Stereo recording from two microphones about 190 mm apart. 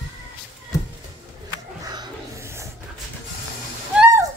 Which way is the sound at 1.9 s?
20° right (ahead or behind).